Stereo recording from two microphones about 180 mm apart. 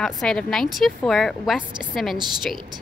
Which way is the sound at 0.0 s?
5° left (ahead or behind).